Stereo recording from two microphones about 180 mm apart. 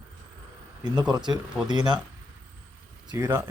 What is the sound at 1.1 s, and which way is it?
Speech, 25° right (ahead or behind).